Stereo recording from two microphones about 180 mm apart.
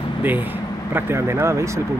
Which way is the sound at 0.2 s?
10° right (ahead or behind).